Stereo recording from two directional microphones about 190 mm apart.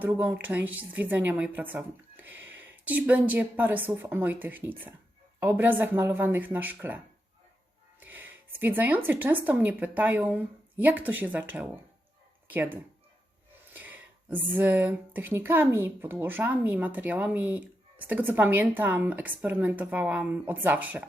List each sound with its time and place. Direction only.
0.0 s a woman's voice: 10° right (ahead or behind)